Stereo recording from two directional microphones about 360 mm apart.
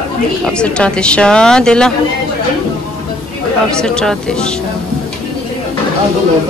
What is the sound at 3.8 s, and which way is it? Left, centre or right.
Speech, centre.